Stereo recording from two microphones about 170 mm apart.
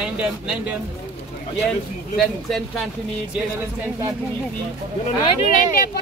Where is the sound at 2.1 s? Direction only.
Centre (ahead or behind).